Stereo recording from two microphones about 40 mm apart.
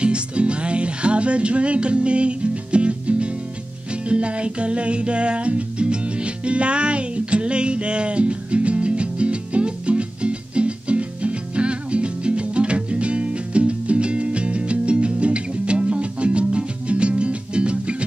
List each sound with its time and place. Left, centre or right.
0.0 s music: right